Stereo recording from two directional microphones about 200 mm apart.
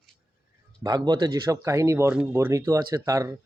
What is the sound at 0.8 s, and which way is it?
Speech, 20° right (ahead or behind).